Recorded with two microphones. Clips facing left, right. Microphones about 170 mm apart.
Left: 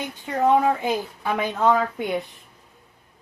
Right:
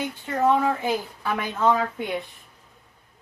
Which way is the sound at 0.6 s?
20° left (ahead or behind).